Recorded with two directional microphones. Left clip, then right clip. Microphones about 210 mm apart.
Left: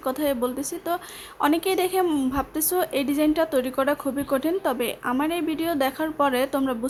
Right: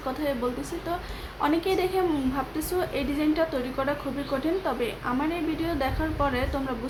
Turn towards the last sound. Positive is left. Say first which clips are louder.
# left 5 dB
turn(degrees=45)  # may be behind; listen again after turning